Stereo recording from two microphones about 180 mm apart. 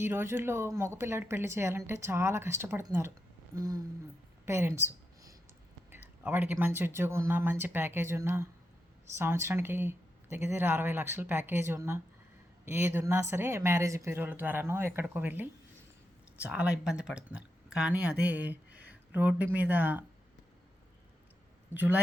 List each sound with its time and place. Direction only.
0.0 s speech: 15° right (ahead or behind)
4.4 s a sound: 15° right (ahead or behind)
5.9 s speech: 10° right (ahead or behind)
21.7 s speech: 10° right (ahead or behind)